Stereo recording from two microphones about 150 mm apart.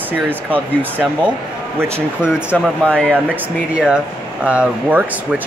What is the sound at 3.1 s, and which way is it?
Speech, 10° right (ahead or behind).